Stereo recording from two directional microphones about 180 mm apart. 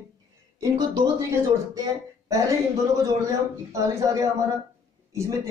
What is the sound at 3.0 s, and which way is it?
Speech, 20° right (ahead or behind).